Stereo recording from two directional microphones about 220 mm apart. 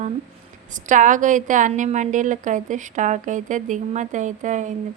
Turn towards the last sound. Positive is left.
turn(degrees=-35)  # may be behind; listen again after turning